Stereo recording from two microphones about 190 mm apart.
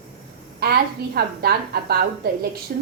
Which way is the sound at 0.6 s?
55° right (ahead or behind).